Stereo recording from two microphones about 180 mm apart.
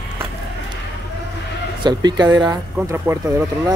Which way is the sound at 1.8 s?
25° right (ahead or behind).